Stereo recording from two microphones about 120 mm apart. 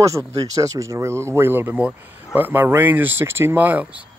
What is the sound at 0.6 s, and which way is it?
Speech, 25° right (ahead or behind).